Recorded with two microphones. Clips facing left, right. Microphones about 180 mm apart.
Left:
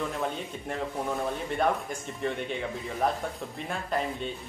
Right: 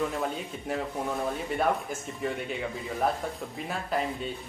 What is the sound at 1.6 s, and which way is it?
Speech, 5° right (ahead or behind).